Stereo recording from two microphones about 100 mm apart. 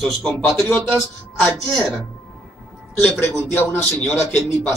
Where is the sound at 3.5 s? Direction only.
20° left (ahead or behind).